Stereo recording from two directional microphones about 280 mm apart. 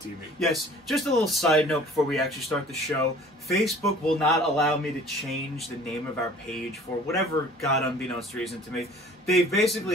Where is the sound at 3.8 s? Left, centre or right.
Centre.